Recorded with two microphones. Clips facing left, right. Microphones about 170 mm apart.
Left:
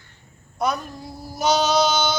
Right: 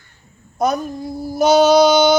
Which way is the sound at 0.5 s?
45° right (ahead or behind).